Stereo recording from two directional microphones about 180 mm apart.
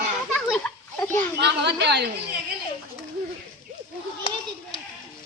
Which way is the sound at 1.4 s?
70° right (ahead or behind).